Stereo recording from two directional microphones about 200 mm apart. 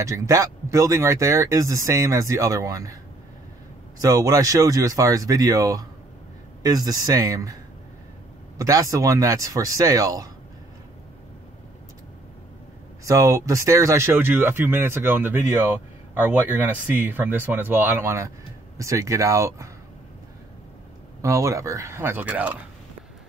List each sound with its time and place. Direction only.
0.0 s speech: 15° right (ahead or behind)
4.0 s speech: 15° right (ahead or behind)
8.5 s speech: 15° right (ahead or behind)
13.0 s speech: 15° right (ahead or behind)
21.2 s speech: 15° right (ahead or behind)